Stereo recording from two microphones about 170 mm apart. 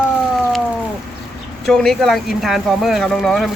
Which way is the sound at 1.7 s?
Centre (ahead or behind).